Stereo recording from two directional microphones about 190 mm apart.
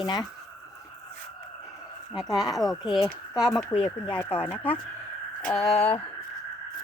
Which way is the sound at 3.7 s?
25° left (ahead or behind).